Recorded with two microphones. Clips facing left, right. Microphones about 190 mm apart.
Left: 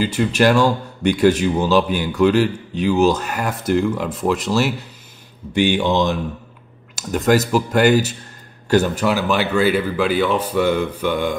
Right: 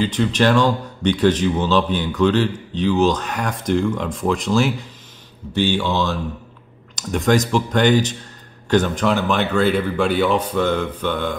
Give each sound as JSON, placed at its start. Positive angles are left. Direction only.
{"t": 0.0, "sound": "a man's voice", "side_deg": 10}
{"t": 5.5, "sound": "a man's voice", "side_deg": 15}
{"t": 7.0, "sound": "a man's voice", "side_deg": 5}